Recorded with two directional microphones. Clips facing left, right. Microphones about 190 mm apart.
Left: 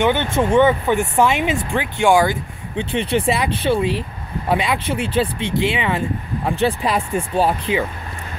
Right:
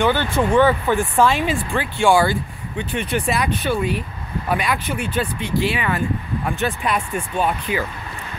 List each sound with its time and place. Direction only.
0.0 s speech: 20° left (ahead or behind)
2.8 s speech: 30° left (ahead or behind)